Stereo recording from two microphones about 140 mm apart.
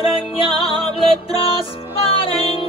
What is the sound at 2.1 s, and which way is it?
Music, 40° left (ahead or behind).